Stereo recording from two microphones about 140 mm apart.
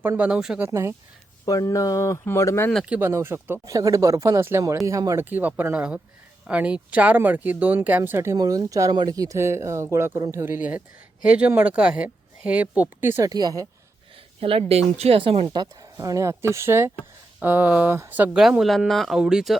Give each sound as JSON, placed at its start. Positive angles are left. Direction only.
{"t": 0.0, "sound": "speech", "side_deg": -10}
{"t": 0.7, "sound": "speech", "side_deg": -20}
{"t": 1.5, "sound": "speech", "side_deg": 25}
{"t": 2.9, "sound": "speech", "side_deg": -20}
{"t": 5.2, "sound": "speech", "side_deg": -10}
{"t": 14.4, "sound": "speech", "side_deg": -45}
{"t": 15.4, "sound": "speech", "side_deg": -25}
{"t": 18.4, "sound": "speech", "side_deg": 0}